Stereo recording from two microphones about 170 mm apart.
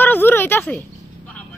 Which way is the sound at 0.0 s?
10° left (ahead or behind).